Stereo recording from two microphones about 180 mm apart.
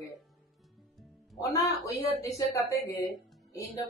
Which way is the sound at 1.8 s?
20° left (ahead or behind).